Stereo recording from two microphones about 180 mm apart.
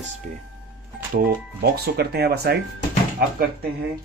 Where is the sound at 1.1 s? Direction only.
60° right (ahead or behind).